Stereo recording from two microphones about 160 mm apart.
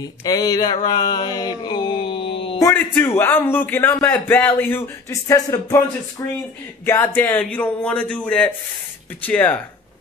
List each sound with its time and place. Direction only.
0.2 s a sound: 25° left (ahead or behind)
0.8 s mantra: 25° left (ahead or behind)
2.6 s a man's voice: 15° left (ahead or behind)